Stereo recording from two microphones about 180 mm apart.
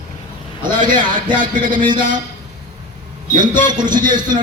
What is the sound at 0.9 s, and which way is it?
Speech, 50° right (ahead or behind).